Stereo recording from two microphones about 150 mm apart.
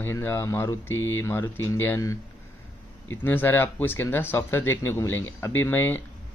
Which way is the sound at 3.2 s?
15° left (ahead or behind).